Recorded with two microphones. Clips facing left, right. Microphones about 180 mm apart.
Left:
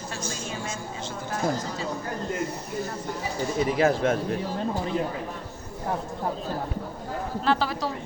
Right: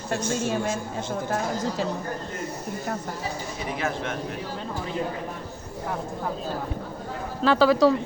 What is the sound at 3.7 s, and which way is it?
Speech, 35° left (ahead or behind).